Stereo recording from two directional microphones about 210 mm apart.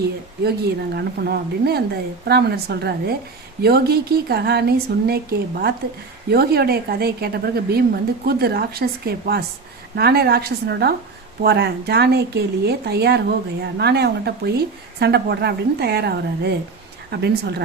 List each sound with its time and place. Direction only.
0.4 s speech: 50° right (ahead or behind)